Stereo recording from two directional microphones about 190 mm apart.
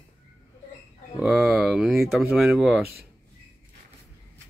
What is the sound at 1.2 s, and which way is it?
Speech, centre (ahead or behind).